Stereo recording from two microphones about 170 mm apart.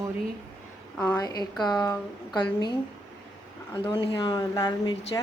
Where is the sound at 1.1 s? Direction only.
25° left (ahead or behind).